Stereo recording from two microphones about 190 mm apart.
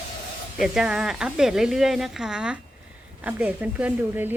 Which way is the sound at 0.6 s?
5° right (ahead or behind).